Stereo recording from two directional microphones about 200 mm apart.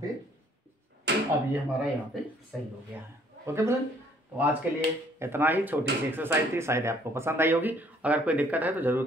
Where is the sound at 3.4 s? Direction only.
15° right (ahead or behind).